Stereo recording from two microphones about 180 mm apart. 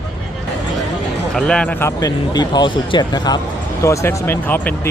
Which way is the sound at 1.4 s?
5° left (ahead or behind).